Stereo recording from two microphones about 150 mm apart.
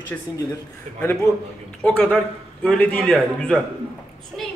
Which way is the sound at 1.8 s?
10° left (ahead or behind).